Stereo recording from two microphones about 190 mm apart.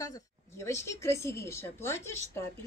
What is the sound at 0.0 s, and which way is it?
A woman's voice, 15° left (ahead or behind).